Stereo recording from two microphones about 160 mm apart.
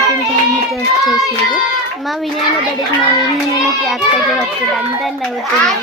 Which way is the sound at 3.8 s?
Centre (ahead or behind).